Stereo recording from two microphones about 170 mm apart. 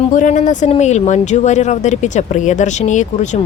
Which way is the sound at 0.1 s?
50° left (ahead or behind).